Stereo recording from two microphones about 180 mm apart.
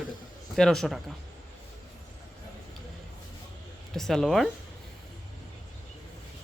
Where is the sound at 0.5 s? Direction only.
5° left (ahead or behind).